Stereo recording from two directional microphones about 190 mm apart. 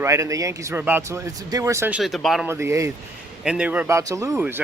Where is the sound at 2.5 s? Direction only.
15° right (ahead or behind).